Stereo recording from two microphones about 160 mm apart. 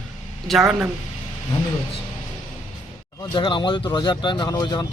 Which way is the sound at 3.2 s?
30° left (ahead or behind).